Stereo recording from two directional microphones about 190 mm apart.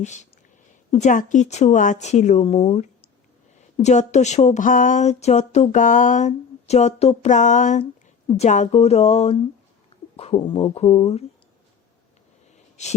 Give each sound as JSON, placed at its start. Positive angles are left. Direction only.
{"t": 0.0, "sound": "speech", "side_deg": 40}